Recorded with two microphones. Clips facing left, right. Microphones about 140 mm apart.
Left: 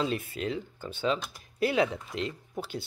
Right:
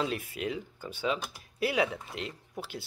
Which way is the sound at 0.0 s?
10° right (ahead or behind).